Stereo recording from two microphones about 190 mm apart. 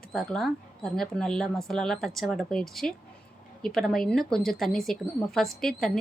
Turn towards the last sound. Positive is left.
turn(degrees=0)  # may be behind; listen again after turning